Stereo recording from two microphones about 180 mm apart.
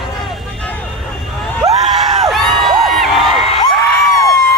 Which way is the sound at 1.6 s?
35° right (ahead or behind).